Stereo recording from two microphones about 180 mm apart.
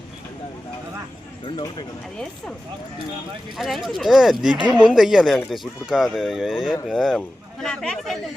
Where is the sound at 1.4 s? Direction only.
25° left (ahead or behind).